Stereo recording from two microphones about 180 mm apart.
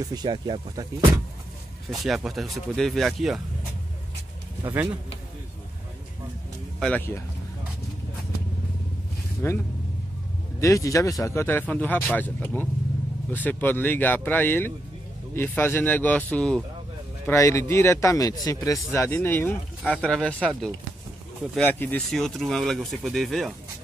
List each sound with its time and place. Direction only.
0.0 s speech: 25° right (ahead or behind)
1.9 s speech: centre (ahead or behind)
4.6 s a man's voice: 15° right (ahead or behind)
6.8 s speech: 10° left (ahead or behind)
9.4 s speech: 15° left (ahead or behind)
10.6 s speech: 20° left (ahead or behind)
17.3 s speech: 15° left (ahead or behind); by 23.5 s centre (ahead or behind)